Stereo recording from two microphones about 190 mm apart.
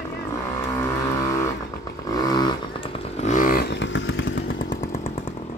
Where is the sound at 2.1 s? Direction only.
20° left (ahead or behind); by 4.7 s 70° left (ahead or behind).